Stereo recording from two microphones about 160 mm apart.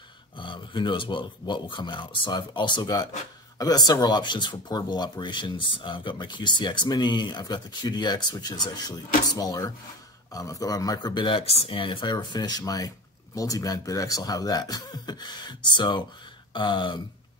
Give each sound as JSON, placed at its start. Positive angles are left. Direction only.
{"t": 0.4, "sound": "speech", "side_deg": 30}